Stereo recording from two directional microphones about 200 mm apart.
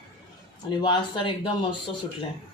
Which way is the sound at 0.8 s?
25° left (ahead or behind).